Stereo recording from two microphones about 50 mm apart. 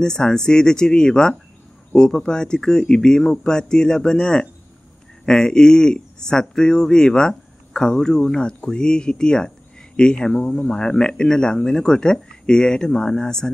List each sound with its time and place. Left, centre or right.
0.0 s speech: centre